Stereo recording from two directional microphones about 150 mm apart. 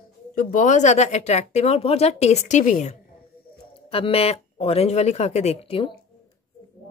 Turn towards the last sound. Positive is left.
turn(degrees=40)  # may be behind; listen again after turning